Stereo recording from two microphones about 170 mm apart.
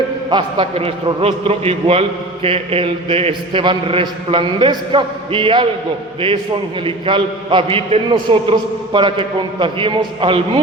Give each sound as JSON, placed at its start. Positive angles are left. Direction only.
{"t": 0.3, "sound": "a man's voice", "side_deg": -25}